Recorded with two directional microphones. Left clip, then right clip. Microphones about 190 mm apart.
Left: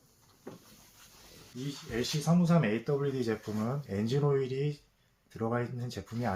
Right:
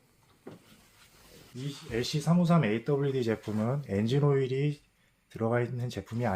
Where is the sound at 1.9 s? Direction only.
50° right (ahead or behind).